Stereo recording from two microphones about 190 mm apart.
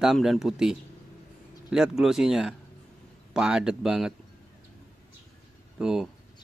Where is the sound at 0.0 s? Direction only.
Centre (ahead or behind).